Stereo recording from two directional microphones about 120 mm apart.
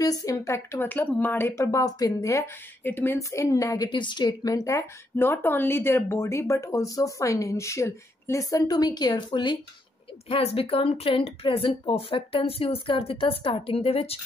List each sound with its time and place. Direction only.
0.0 s a woman's voice: 30° left (ahead or behind)
3.2 s a woman's voice: 25° left (ahead or behind)
10.2 s speech: 55° left (ahead or behind)